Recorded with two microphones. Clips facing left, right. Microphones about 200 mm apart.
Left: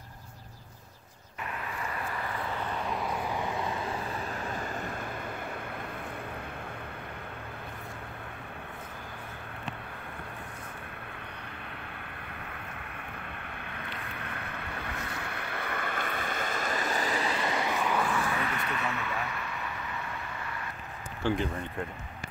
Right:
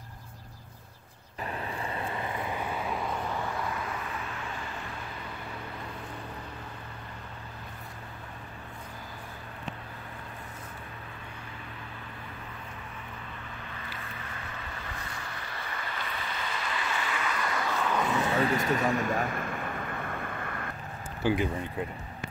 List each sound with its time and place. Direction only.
1.8 s vehicle: 25° right (ahead or behind); by 3.8 s 20° left (ahead or behind)
4.3 s vehicle: 40° left (ahead or behind)
13.7 s vehicle: 60° left (ahead or behind); by 18.1 s 10° left (ahead or behind)
18.1 s vehicle: 25° right (ahead or behind)
18.4 s vehicle: 35° right (ahead or behind); by 20.7 s 50° right (ahead or behind)
21.2 s speech: 5° right (ahead or behind)